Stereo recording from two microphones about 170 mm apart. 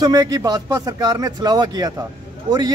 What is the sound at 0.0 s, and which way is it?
Speech, 20° right (ahead or behind).